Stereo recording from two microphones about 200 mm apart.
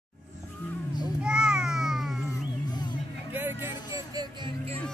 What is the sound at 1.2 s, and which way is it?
Babbling, 5° right (ahead or behind).